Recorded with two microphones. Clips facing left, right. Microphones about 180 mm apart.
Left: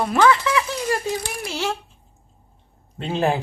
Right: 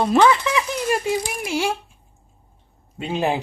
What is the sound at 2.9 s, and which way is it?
Speech, 10° right (ahead or behind).